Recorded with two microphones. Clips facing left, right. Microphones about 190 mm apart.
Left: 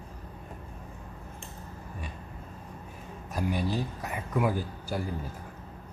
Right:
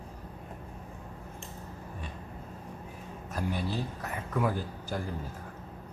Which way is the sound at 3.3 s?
15° left (ahead or behind).